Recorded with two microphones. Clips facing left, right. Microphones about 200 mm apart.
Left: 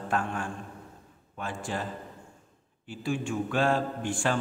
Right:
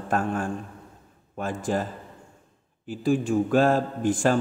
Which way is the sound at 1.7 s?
45° right (ahead or behind).